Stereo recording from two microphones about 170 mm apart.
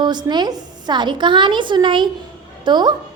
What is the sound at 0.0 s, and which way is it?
A woman's voice, 25° right (ahead or behind).